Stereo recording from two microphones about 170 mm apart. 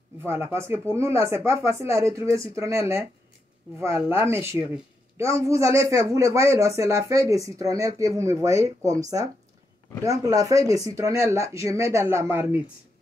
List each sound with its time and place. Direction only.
0.2 s a man's voice: 15° right (ahead or behind)